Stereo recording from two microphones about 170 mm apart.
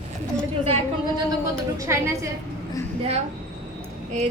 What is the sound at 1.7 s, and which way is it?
Speech, 15° right (ahead or behind).